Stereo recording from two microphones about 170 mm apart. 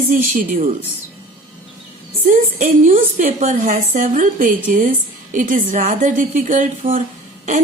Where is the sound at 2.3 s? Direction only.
55° right (ahead or behind).